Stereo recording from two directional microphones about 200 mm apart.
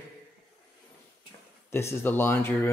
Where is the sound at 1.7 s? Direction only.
10° left (ahead or behind).